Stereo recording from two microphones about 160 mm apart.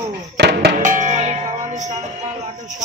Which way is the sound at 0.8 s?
55° right (ahead or behind).